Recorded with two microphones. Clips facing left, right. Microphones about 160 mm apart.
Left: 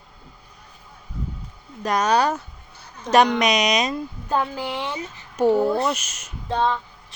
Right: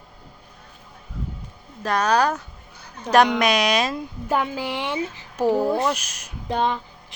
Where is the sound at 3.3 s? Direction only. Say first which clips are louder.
Even; 5° right (ahead or behind).